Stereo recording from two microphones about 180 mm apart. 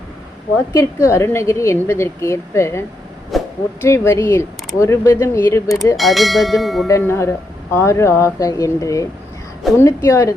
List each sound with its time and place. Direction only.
0.7 s a woman's voice: 15° left (ahead or behind)
3.3 s a sound: centre (ahead or behind)
3.8 s a woman's voice: 15° left (ahead or behind)
6.0 s speech: centre (ahead or behind)
6.8 s a woman's voice: 15° left (ahead or behind)